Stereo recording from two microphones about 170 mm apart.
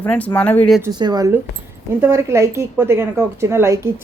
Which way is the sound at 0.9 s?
25° right (ahead or behind).